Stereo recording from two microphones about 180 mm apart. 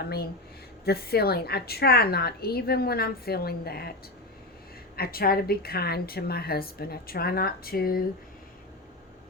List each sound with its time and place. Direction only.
0.9 s a woman's voice: 60° left (ahead or behind)
4.9 s a woman's voice: 55° left (ahead or behind)